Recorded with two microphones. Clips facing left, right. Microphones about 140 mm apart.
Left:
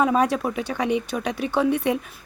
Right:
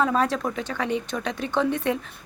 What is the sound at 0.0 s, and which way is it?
A woman's voice, 15° left (ahead or behind).